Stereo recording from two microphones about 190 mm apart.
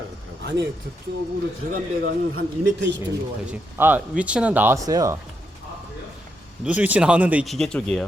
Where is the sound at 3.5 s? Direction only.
10° right (ahead or behind).